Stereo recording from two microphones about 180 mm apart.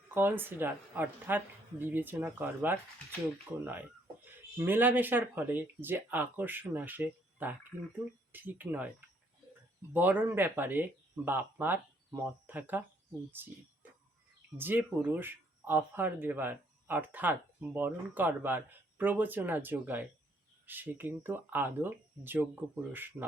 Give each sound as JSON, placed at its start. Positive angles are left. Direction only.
{"t": 0.1, "sound": "speech", "side_deg": -10}
{"t": 9.9, "sound": "speech", "side_deg": -10}
{"t": 14.6, "sound": "speech", "side_deg": -10}